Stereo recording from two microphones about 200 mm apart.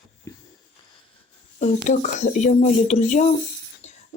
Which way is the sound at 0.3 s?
15° left (ahead or behind).